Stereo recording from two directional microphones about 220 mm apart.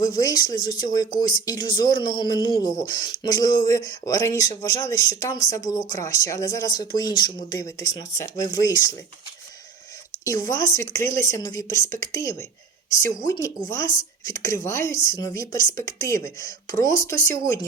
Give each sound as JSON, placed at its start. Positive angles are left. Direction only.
{"t": 0.0, "sound": "a man's voice", "side_deg": 15}
{"t": 10.2, "sound": "speech", "side_deg": 15}